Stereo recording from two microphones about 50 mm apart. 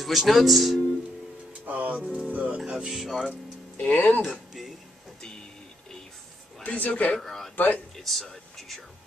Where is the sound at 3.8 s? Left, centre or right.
Left.